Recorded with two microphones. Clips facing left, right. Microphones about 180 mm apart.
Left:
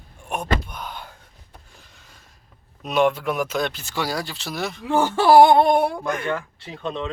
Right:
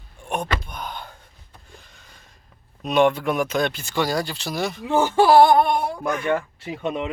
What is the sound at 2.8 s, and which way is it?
Speech, 5° left (ahead or behind).